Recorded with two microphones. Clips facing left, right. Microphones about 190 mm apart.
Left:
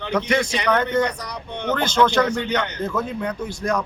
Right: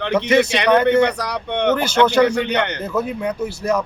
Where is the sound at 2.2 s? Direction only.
75° right (ahead or behind).